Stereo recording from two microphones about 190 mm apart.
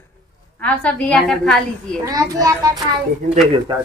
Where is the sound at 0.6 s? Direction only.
5° left (ahead or behind).